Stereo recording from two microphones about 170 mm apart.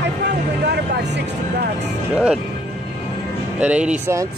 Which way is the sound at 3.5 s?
5° right (ahead or behind).